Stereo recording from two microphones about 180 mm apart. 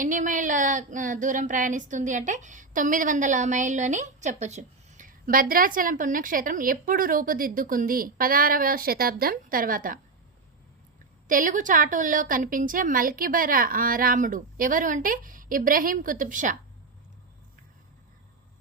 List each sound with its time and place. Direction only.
0.0 s a woman's voice: 45° right (ahead or behind)
11.3 s a woman's voice: 45° right (ahead or behind)